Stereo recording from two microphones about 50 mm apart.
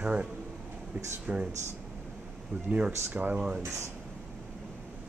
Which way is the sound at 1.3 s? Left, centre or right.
Right.